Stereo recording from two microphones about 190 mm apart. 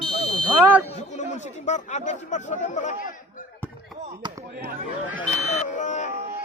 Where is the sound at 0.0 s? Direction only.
30° left (ahead or behind).